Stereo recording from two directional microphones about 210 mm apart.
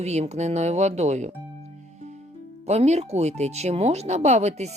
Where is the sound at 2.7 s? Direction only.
30° right (ahead or behind).